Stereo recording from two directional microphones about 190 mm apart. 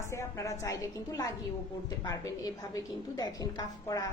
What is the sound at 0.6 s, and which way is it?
A woman's voice, 15° left (ahead or behind).